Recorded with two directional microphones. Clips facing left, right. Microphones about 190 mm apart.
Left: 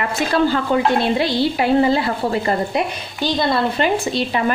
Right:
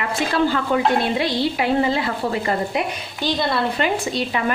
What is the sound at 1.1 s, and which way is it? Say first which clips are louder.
Speech: left 3 dB; 35° left (ahead or behind).